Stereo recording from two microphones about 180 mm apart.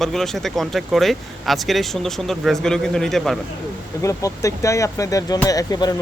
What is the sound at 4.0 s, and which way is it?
Speech, 15° left (ahead or behind).